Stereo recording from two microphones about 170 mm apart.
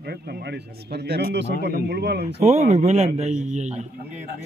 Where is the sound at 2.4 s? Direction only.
40° right (ahead or behind).